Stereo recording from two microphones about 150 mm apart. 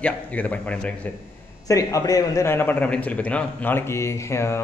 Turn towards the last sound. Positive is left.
turn(degrees=20)  # may be behind; listen again after turning